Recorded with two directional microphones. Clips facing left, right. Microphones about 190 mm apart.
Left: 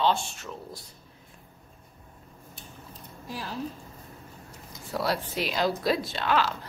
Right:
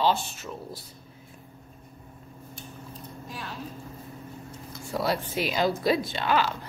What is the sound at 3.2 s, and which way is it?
Speech, 30° left (ahead or behind).